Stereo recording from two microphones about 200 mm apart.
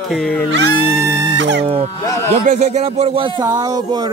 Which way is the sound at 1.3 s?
65° right (ahead or behind).